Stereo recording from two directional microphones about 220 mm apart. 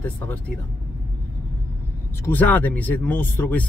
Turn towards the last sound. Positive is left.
turn(degrees=10)  # may be behind; listen again after turning